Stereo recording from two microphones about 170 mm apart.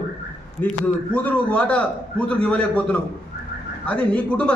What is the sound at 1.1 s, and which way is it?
A man's voice, 5° left (ahead or behind).